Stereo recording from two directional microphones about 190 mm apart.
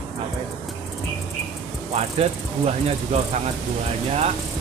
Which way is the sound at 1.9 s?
35° right (ahead or behind).